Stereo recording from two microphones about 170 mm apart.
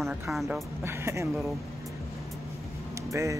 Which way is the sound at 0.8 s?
15° right (ahead or behind).